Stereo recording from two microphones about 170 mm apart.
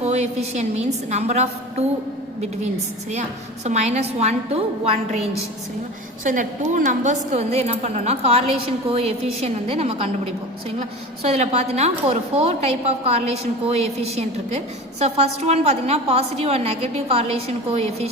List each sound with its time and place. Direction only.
0.0 s a woman's voice: 40° right (ahead or behind)
3.1 s a woman's voice: 40° right (ahead or behind)
6.2 s a woman's voice: 50° right (ahead or behind)